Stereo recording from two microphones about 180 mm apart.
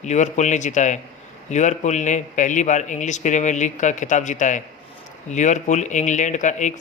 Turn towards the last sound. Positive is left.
turn(degrees=40)  # may be behind; listen again after turning